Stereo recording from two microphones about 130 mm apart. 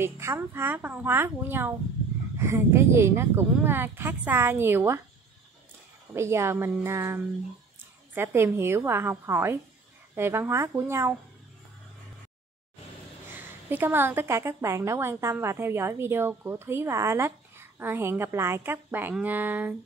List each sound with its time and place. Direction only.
0.0 s a woman's voice: 20° right (ahead or behind)
6.1 s a woman's voice: 20° right (ahead or behind)
13.3 s a woman's voice: 15° right (ahead or behind)